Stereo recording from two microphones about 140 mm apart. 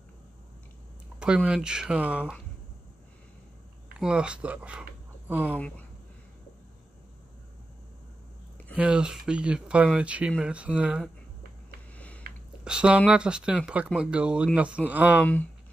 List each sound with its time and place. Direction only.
1.2 s speech: 5° right (ahead or behind)
4.0 s speech: 5° right (ahead or behind)
8.7 s speech: 5° right (ahead or behind)
12.2 s a sound: 90° right
12.6 s speech: 5° right (ahead or behind)